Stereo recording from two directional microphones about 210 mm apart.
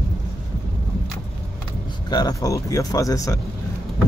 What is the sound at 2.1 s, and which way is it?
Speech, 20° left (ahead or behind).